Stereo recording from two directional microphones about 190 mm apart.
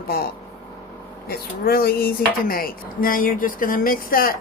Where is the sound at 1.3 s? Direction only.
55° left (ahead or behind).